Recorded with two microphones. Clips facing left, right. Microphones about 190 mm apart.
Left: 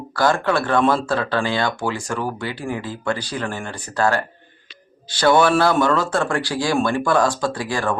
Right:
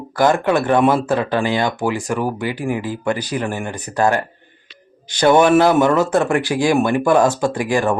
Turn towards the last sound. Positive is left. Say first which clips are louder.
# right 5 dB
turn(degrees=-20)  # may be behind; listen again after turning